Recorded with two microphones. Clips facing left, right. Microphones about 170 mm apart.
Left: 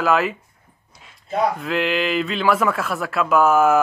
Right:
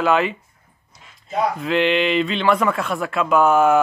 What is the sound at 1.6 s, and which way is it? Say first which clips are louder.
Speech: right 3 dB; centre (ahead or behind).